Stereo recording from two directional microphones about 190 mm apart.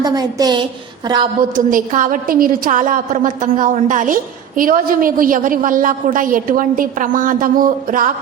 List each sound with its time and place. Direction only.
0.0 s a woman's voice: 20° right (ahead or behind)
1.5 s a woman's voice: 45° right (ahead or behind)